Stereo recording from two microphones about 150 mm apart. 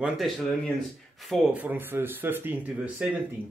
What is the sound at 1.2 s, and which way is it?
Speech, centre (ahead or behind).